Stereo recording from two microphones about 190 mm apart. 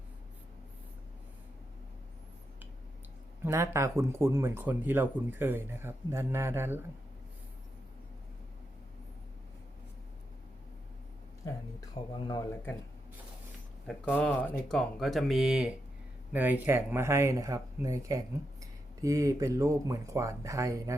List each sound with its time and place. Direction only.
3.4 s speech: 15° right (ahead or behind)
11.4 s a sound: 20° left (ahead or behind)
13.8 s speech: centre (ahead or behind); by 20.9 s 15° right (ahead or behind)